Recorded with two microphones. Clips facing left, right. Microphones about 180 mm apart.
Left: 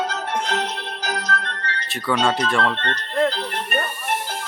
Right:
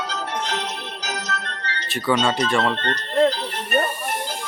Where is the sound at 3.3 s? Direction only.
60° left (ahead or behind).